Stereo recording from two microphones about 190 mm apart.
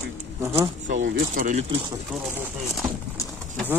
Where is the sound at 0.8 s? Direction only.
50° right (ahead or behind); by 1.9 s 30° right (ahead or behind).